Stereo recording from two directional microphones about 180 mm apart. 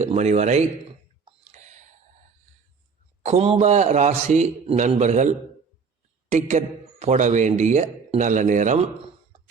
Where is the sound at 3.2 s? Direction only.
35° right (ahead or behind).